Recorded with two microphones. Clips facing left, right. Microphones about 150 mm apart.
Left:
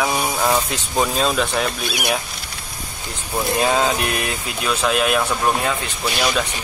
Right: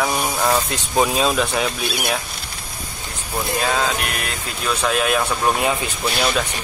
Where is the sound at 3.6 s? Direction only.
20° left (ahead or behind).